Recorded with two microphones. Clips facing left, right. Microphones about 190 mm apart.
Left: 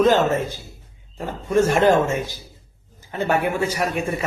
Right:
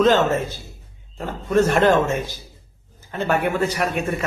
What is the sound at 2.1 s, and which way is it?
Speech, 15° right (ahead or behind).